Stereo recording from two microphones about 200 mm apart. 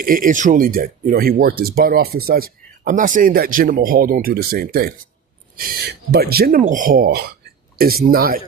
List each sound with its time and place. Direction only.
0.0 s speech: 45° right (ahead or behind)